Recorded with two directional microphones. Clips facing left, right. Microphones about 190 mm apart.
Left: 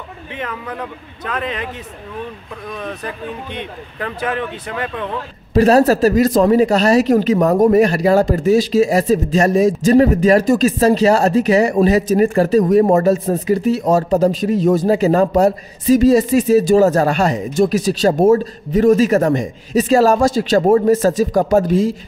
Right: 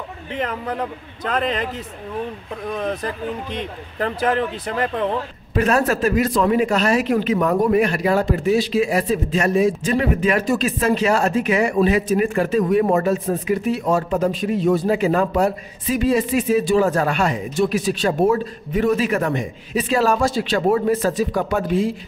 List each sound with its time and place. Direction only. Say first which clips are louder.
0.4 s speech: right 2 dB; 35° right (ahead or behind)
2.8 s speech: right 2 dB; 35° right (ahead or behind)
5.5 s speech: left 7 dB; 35° left (ahead or behind)